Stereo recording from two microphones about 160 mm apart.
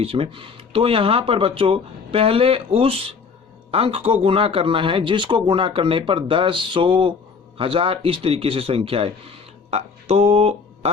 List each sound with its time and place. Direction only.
0.0 s speech: 35° right (ahead or behind)